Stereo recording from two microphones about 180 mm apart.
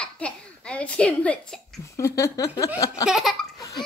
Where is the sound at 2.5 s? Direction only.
20° left (ahead or behind).